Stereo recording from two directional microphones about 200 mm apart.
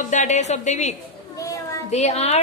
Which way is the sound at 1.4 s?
15° left (ahead or behind).